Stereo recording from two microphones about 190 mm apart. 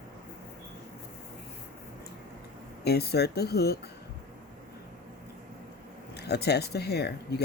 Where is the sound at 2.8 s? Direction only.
55° left (ahead or behind).